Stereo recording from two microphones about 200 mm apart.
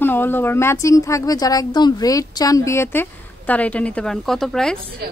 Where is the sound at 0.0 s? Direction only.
10° left (ahead or behind).